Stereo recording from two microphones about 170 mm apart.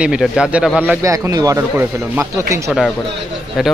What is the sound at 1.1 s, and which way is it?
Speech, 20° right (ahead or behind).